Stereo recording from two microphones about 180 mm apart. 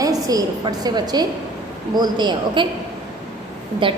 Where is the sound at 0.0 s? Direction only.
20° right (ahead or behind).